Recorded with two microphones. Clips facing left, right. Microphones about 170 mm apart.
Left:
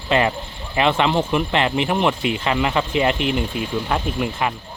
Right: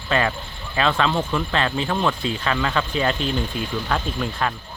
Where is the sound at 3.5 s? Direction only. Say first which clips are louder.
Left 2 dB; 65° left (ahead or behind).